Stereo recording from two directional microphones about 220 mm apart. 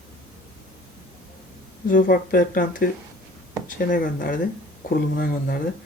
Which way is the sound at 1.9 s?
40° left (ahead or behind).